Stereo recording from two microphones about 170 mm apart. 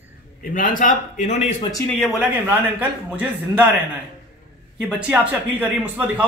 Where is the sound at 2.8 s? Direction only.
10° right (ahead or behind).